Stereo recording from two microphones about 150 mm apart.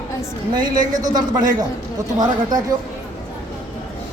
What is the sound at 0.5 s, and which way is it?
Speech, 30° right (ahead or behind).